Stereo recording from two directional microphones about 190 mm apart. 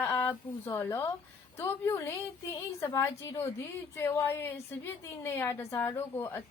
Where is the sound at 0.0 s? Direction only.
10° left (ahead or behind).